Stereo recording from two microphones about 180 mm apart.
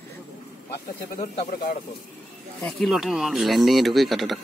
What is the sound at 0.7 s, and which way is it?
Speech, 60° left (ahead or behind).